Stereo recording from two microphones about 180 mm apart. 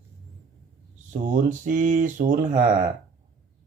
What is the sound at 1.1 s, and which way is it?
A man's voice, 45° right (ahead or behind).